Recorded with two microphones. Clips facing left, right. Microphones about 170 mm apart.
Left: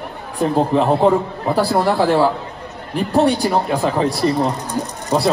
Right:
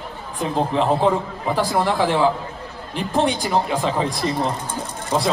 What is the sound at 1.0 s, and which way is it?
A man's voice, 35° left (ahead or behind).